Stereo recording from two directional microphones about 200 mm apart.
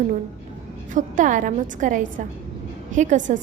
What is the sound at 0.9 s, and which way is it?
A woman's voice, 40° right (ahead or behind).